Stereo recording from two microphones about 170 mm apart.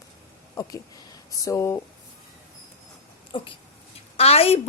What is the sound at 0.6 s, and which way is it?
A woman's voice, 20° left (ahead or behind).